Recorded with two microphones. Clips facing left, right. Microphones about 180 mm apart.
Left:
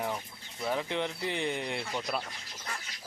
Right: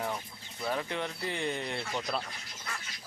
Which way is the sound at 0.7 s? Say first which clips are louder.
Left 4 dB; 15° left (ahead or behind).